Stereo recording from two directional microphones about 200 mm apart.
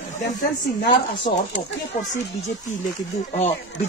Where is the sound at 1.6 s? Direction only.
30° left (ahead or behind).